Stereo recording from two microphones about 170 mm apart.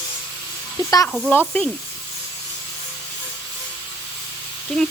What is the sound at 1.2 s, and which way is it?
Speech, 5° left (ahead or behind).